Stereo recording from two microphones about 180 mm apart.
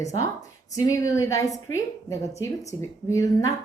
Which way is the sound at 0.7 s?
20° left (ahead or behind).